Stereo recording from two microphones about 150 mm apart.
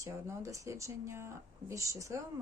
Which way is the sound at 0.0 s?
20° right (ahead or behind).